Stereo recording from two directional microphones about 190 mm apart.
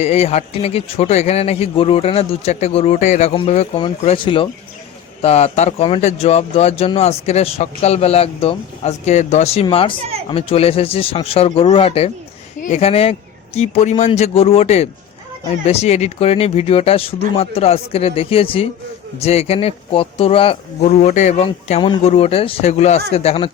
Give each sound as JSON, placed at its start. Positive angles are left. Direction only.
{"t": 0.0, "sound": "speech", "side_deg": 35}